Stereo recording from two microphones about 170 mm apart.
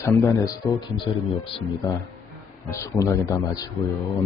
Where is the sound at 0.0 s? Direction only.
20° left (ahead or behind).